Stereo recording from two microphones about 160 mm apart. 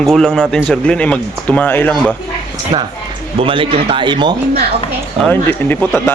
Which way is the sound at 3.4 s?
35° right (ahead or behind).